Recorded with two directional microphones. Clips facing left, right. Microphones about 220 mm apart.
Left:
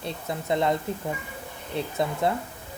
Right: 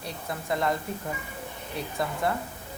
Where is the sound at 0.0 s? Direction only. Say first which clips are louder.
Left 3 dB; 25° left (ahead or behind).